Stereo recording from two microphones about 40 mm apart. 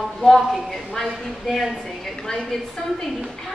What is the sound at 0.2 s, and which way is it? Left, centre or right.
A woman's voice, centre.